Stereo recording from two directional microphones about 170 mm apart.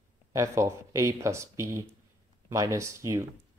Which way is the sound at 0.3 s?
15° right (ahead or behind).